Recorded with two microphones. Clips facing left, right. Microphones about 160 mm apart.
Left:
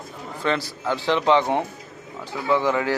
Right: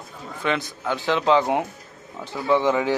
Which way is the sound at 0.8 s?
15° left (ahead or behind).